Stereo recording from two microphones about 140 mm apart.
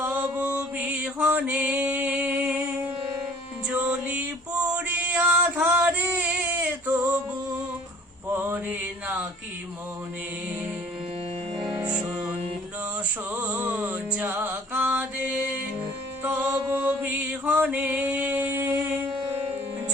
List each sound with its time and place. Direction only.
0.0 s mantra: 10° right (ahead or behind)
3.7 s music: 5° right (ahead or behind)
8.3 s mantra: 15° right (ahead or behind)
11.6 s music: 5° right (ahead or behind)
13.3 s mantra: 10° right (ahead or behind)
16.2 s music: 10° right (ahead or behind)
16.5 s mantra: 25° right (ahead or behind)
16.7 s mantra: 10° right (ahead or behind)